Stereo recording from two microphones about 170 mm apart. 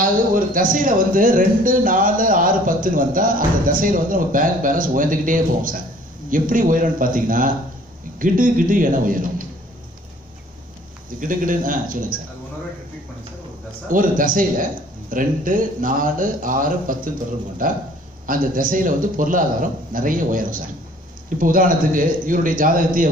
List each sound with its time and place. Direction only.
0.0 s speech: 55° right (ahead or behind)
11.1 s speech: 50° right (ahead or behind)
13.8 s speech: 55° right (ahead or behind)